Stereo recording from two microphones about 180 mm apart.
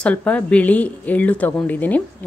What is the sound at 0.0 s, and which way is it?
Speech, 10° left (ahead or behind).